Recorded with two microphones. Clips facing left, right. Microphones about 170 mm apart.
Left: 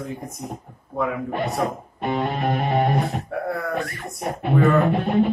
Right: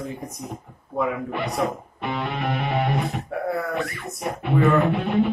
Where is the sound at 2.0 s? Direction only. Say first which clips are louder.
Left 4 dB; 45° left (ahead or behind).